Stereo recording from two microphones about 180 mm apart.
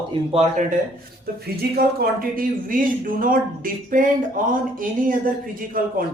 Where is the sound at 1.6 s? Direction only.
60° right (ahead or behind).